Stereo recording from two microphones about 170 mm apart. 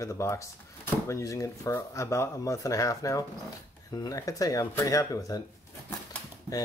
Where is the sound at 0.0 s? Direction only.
15° left (ahead or behind).